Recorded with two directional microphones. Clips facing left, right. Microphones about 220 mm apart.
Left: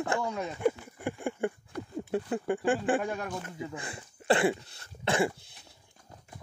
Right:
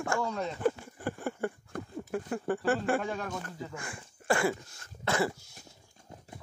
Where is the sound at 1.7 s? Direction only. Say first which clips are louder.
Left 1 dB; 50° right (ahead or behind).